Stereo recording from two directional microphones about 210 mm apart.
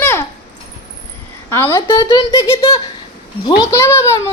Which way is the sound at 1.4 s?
10° left (ahead or behind).